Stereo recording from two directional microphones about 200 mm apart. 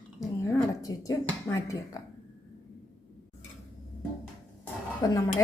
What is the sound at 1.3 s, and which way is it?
Speech, 15° left (ahead or behind).